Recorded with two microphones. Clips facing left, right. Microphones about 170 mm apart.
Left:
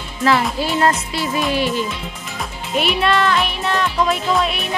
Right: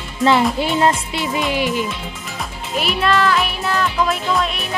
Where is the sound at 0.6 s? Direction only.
15° right (ahead or behind).